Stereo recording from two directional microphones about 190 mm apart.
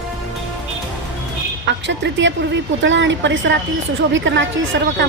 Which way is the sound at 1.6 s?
70° right (ahead or behind).